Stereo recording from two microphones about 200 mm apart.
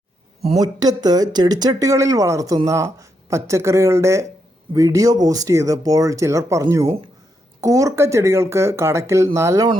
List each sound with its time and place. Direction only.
0.6 s speech: 20° right (ahead or behind)